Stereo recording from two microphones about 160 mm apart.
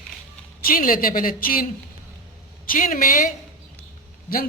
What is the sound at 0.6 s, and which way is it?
Speech, 60° left (ahead or behind).